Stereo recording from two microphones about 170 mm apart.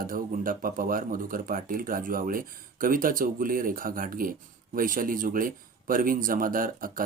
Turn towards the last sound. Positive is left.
turn(degrees=-55)  # may be behind; listen again after turning